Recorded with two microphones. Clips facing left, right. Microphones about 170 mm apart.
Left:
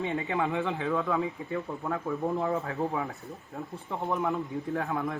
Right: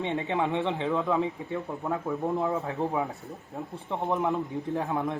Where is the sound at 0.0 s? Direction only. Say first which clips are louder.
Right 1 dB; 20° right (ahead or behind).